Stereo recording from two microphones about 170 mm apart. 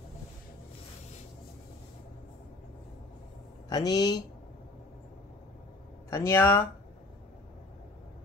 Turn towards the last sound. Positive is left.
turn(degrees=15)  # may be behind; listen again after turning